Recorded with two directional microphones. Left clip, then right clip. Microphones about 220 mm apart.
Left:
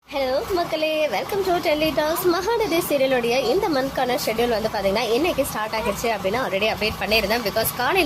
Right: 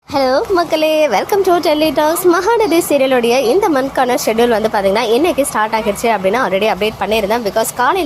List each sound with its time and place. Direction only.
0.2 s a woman's voice: 30° right (ahead or behind)